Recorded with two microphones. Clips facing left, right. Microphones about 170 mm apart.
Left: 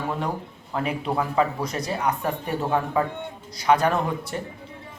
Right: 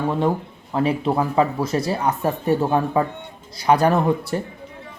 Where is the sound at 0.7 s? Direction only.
30° right (ahead or behind).